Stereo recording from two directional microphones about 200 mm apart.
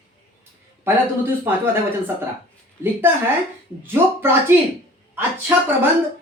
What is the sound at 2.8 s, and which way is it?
Speech, 10° right (ahead or behind).